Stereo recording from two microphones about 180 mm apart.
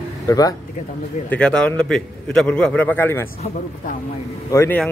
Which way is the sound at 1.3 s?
5° left (ahead or behind).